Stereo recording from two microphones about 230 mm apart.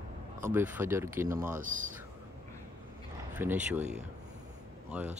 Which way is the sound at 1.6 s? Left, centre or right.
Right.